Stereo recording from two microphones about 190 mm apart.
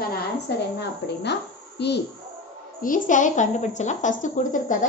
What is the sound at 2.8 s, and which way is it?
A woman's voice, 45° left (ahead or behind).